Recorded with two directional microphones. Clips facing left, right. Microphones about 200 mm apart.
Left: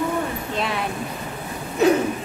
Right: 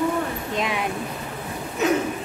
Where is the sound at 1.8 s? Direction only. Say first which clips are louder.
Left 5 dB; 35° left (ahead or behind).